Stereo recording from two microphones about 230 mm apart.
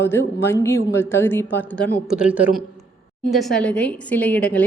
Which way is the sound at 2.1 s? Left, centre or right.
Centre.